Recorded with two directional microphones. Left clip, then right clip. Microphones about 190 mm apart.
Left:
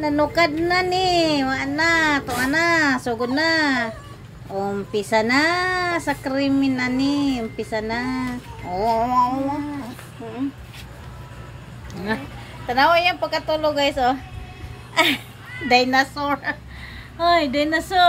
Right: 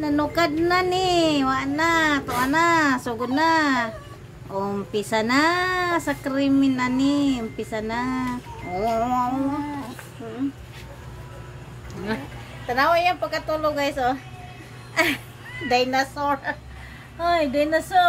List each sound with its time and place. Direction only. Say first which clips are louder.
0.0 s speech: left 3 dB; centre (ahead or behind)
12.6 s a woman's voice: left 3 dB; 5° left (ahead or behind); by 18.0 s 20° left (ahead or behind)